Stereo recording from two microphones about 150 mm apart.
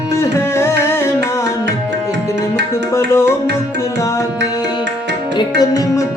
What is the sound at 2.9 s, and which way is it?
Music, 20° left (ahead or behind).